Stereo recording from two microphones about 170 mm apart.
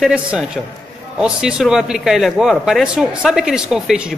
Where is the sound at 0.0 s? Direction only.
5° right (ahead or behind).